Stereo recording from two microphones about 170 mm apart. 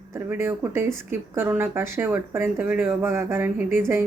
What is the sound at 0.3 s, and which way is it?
Speech, 15° right (ahead or behind).